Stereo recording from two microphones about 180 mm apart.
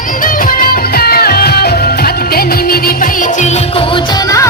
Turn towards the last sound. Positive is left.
turn(degrees=25)  # may be behind; listen again after turning